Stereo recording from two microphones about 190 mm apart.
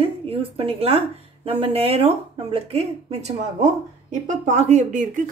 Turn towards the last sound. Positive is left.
turn(degrees=-40)  # may be behind; listen again after turning